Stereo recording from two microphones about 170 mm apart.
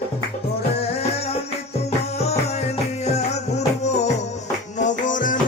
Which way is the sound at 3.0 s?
40° left (ahead or behind).